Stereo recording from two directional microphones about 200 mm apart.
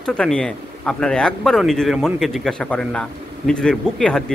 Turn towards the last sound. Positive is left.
turn(degrees=5)  # may be behind; listen again after turning